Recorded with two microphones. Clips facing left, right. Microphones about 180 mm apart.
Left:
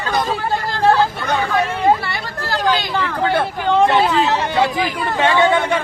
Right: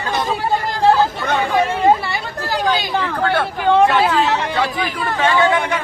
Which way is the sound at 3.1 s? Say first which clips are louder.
Left 2 dB; 15° left (ahead or behind).